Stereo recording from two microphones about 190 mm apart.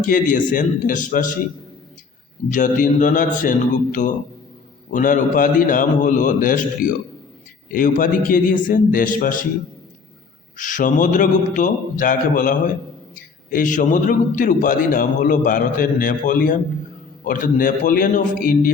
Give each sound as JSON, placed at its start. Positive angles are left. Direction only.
{"t": 0.0, "sound": "a man's voice", "side_deg": 45}
{"t": 2.5, "sound": "a man's voice", "side_deg": 45}
{"t": 4.9, "sound": "a man's voice", "side_deg": 45}
{"t": 10.6, "sound": "a man's voice", "side_deg": 45}